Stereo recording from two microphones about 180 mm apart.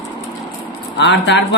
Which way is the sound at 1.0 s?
75° left (ahead or behind).